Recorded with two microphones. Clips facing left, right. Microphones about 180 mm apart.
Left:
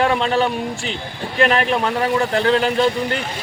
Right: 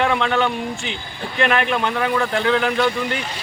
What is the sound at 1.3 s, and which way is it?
A man's voice, 40° left (ahead or behind).